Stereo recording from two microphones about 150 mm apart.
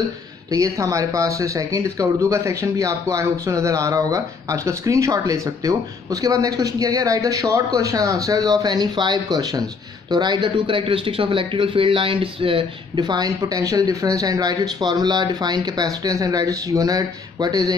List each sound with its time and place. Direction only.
0.5 s speech: 20° right (ahead or behind)